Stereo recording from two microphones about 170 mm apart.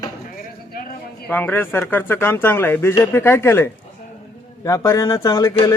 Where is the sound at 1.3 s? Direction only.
10° left (ahead or behind).